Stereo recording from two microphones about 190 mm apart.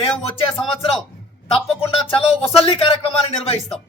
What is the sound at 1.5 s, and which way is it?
A man's voice, 30° left (ahead or behind).